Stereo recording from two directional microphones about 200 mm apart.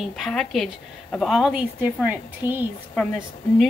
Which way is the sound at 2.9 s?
Centre (ahead or behind).